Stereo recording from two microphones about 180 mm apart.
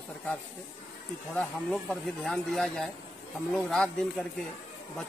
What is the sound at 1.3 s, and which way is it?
Speech, 5° left (ahead or behind).